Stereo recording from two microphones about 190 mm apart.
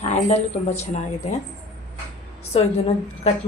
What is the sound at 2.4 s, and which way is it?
Speech, 35° left (ahead or behind).